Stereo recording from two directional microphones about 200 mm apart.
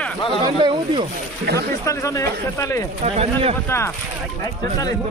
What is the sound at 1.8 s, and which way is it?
Speech, 15° left (ahead or behind).